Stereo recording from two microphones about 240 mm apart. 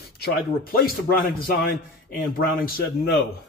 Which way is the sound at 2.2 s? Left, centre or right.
Left.